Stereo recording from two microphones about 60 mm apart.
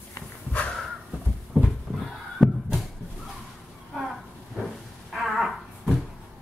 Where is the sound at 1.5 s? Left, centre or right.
Centre.